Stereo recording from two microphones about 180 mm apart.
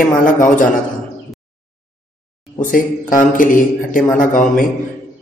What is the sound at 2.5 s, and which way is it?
A man's voice, 50° left (ahead or behind).